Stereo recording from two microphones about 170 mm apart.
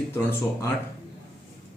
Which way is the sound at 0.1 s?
15° left (ahead or behind).